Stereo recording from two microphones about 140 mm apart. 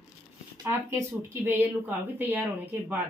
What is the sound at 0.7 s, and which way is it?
Speech, 20° right (ahead or behind).